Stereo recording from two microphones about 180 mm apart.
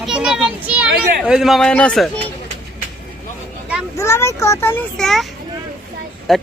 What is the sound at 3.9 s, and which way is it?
Speech, 15° left (ahead or behind).